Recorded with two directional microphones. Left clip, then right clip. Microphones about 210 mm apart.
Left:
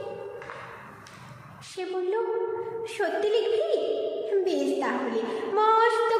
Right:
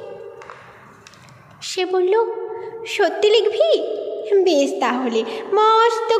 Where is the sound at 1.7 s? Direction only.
40° right (ahead or behind).